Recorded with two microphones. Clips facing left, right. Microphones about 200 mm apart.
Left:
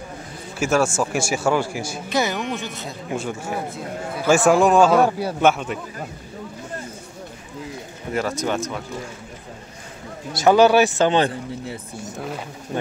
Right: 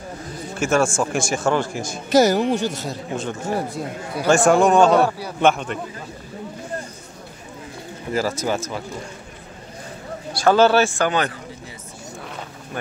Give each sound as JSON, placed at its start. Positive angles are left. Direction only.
{"t": 0.6, "sound": "a man's voice", "side_deg": 5}
{"t": 2.0, "sound": "speech", "side_deg": -40}
{"t": 2.5, "sound": "a man's voice", "side_deg": 0}
{"t": 8.1, "sound": "speech", "side_deg": 0}
{"t": 10.3, "sound": "speech", "side_deg": 15}